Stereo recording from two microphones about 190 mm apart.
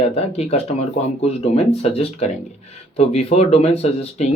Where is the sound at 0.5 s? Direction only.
35° left (ahead or behind).